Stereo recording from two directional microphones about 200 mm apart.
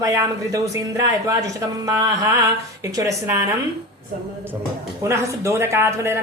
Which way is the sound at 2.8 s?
15° right (ahead or behind).